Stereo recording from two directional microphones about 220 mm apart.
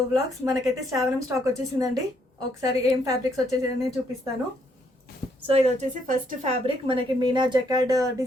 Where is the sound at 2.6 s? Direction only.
15° right (ahead or behind).